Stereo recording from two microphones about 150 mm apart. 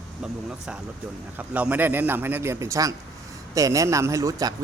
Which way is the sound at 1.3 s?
10° right (ahead or behind).